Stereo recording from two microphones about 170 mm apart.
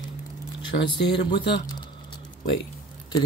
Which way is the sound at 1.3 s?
90° left.